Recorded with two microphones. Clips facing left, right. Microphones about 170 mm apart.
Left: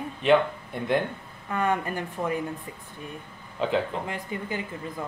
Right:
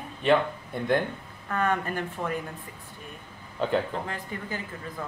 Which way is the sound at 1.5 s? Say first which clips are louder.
Left 1 dB; 15° left (ahead or behind).